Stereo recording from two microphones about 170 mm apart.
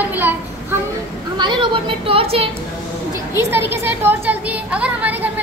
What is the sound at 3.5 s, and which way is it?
A woman's voice, 15° right (ahead or behind).